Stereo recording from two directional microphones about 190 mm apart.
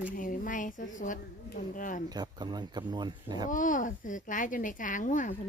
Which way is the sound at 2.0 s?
20° right (ahead or behind).